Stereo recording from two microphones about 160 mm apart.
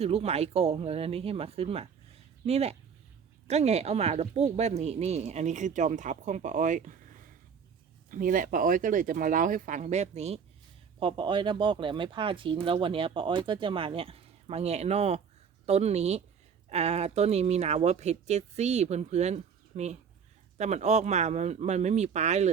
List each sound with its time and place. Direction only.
0.0 s speech: 40° right (ahead or behind)
11.0 s speech: 30° right (ahead or behind)